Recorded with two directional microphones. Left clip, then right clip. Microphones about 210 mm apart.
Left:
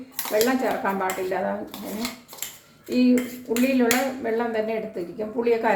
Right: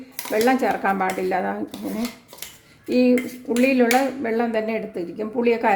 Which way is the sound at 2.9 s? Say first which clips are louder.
Right 3 dB; 55° right (ahead or behind).